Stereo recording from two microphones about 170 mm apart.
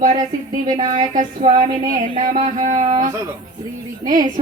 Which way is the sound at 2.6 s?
45° right (ahead or behind).